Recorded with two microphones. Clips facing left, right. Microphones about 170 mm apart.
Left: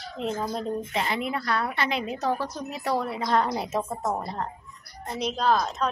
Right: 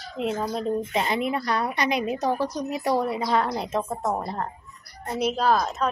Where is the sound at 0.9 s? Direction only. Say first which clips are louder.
Right 3 dB; 20° right (ahead or behind).